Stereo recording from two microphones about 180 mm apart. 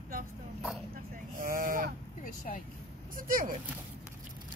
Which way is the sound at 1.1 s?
50° right (ahead or behind).